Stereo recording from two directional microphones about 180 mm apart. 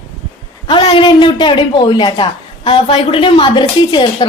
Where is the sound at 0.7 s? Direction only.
30° left (ahead or behind).